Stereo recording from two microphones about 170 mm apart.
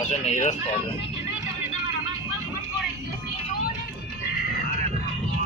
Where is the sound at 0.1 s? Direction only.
45° left (ahead or behind).